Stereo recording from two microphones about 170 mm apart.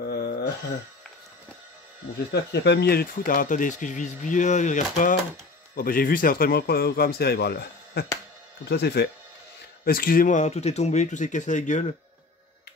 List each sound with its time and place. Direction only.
0.0 s a sound: 80° left
2.3 s speech: 80° left; by 5.1 s 45° left (ahead or behind)
5.8 s a man's voice: 60° left (ahead or behind); by 9.1 s 75° left (ahead or behind)
9.8 s speech: 60° left (ahead or behind)